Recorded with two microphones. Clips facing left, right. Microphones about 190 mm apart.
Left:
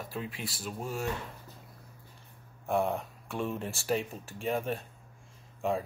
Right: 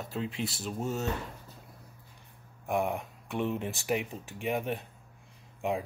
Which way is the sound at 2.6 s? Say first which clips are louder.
Left 1 dB; 15° right (ahead or behind).